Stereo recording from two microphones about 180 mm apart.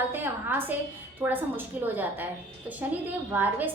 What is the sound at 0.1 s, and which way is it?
A woman's voice, 10° right (ahead or behind).